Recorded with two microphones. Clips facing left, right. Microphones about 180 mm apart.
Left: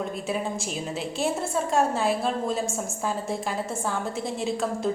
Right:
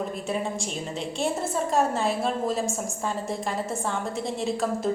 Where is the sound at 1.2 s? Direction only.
Centre (ahead or behind).